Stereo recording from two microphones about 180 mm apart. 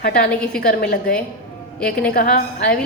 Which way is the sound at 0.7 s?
60° left (ahead or behind).